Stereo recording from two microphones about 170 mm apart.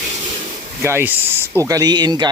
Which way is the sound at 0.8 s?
15° right (ahead or behind).